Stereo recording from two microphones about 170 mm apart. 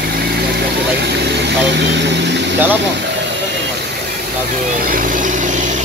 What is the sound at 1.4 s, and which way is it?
Vehicle, 90° right.